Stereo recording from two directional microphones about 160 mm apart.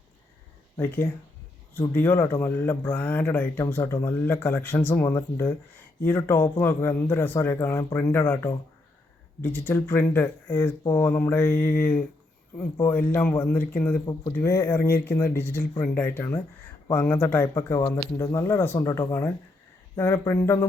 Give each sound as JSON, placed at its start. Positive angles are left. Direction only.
{"t": 0.8, "sound": "speech", "side_deg": 15}
{"t": 14.0, "sound": "speech", "side_deg": 25}